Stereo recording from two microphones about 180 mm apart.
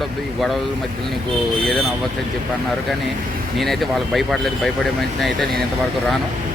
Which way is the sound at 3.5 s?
Centre (ahead or behind).